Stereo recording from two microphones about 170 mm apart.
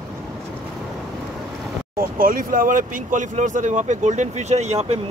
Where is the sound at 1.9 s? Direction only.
55° right (ahead or behind).